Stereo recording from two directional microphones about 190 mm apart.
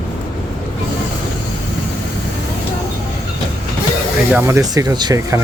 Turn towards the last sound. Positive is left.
turn(degrees=-20)  # may be behind; listen again after turning